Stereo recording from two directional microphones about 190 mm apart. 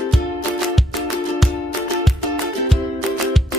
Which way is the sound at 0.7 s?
Centre (ahead or behind).